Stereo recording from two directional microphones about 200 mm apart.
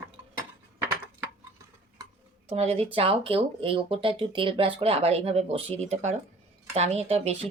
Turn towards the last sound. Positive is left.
turn(degrees=-30)  # may be behind; listen again after turning